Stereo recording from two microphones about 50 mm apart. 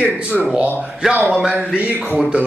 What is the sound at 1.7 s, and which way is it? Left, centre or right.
Speech, right.